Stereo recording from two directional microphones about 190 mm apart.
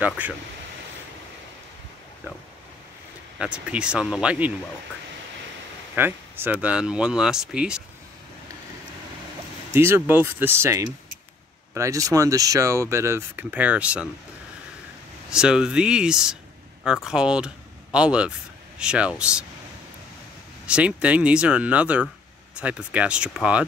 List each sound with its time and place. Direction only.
0.2 s speech: 10° right (ahead or behind)
3.3 s speech: 5° right (ahead or behind)
5.9 s speech: 10° right (ahead or behind)
9.8 s speech: 10° right (ahead or behind)
15.2 s speech: 5° right (ahead or behind)
20.6 s speech: 5° right (ahead or behind)